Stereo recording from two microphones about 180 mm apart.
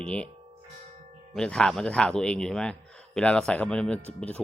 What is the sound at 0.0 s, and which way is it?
Tubular bells, 5° left (ahead or behind).